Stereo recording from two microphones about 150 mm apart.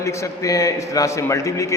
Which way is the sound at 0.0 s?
20° left (ahead or behind).